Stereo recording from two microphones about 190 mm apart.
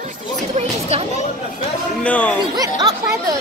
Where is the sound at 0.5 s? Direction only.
30° right (ahead or behind).